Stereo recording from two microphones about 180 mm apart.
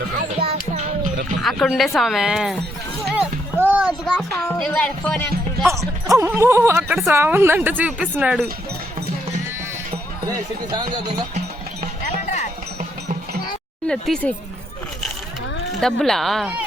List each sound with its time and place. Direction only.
0.3 s music: 35° right (ahead or behind)
1.4 s speech: centre (ahead or behind)
2.0 s music: centre (ahead or behind)
3.6 s a child's voice: 10° right (ahead or behind)
5.6 s a woman's voice: 15° right (ahead or behind)
10.7 s speech: 25° right (ahead or behind)
13.8 s speech: 5° left (ahead or behind)
15.8 s speech: centre (ahead or behind)